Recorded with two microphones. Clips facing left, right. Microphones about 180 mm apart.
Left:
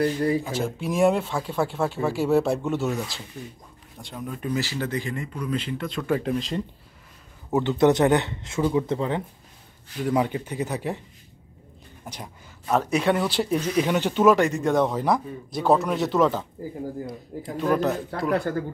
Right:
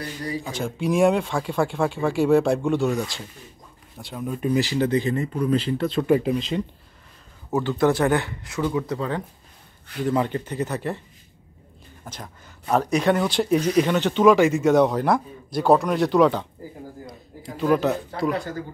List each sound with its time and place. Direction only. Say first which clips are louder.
0.0 s speech: left 8 dB; 50° left (ahead or behind)
0.4 s speech: even; 5° left (ahead or behind)
4.3 s speech: right 6 dB; 15° right (ahead or behind)
5.2 s speech: right 6 dB; 35° right (ahead or behind)
6.2 s speech: right 2 dB; centre (ahead or behind)
7.5 s speech: left 1 dB; 20° left (ahead or behind)
10.0 s speech: right 1 dB; 10° left (ahead or behind)
12.0 s speech: even; 15° left (ahead or behind)
12.6 s speech: right 2 dB; centre (ahead or behind)
18.5 s speech: left 4 dB; 55° left (ahead or behind)